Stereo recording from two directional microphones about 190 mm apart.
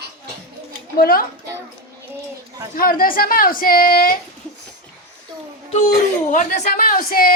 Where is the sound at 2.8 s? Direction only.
50° left (ahead or behind).